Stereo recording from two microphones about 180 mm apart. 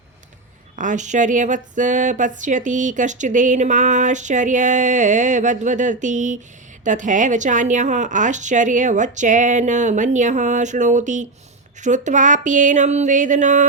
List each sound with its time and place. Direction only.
0.8 s speech: 45° right (ahead or behind)